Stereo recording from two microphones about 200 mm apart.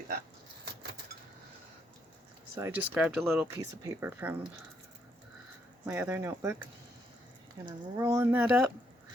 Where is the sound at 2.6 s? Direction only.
10° right (ahead or behind).